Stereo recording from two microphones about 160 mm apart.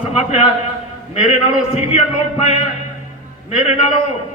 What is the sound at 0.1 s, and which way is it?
Speech, 40° left (ahead or behind).